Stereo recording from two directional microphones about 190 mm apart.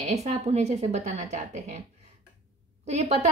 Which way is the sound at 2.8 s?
35° right (ahead or behind).